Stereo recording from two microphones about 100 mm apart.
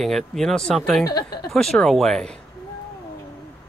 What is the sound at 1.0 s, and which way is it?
Speech, 40° left (ahead or behind).